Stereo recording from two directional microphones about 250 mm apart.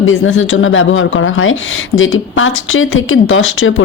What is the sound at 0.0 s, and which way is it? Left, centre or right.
Speech, left.